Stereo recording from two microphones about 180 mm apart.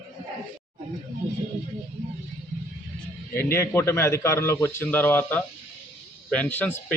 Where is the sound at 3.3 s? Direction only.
15° left (ahead or behind).